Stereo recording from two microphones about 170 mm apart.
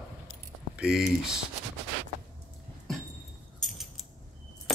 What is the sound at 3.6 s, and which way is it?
Keys jangling, centre (ahead or behind).